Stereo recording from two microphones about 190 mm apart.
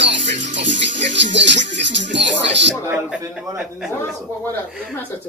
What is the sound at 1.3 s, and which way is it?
Music, 70° right (ahead or behind).